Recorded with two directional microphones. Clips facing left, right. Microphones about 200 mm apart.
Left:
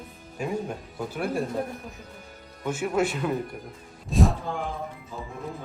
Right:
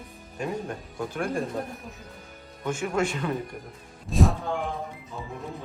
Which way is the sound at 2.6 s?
5° left (ahead or behind).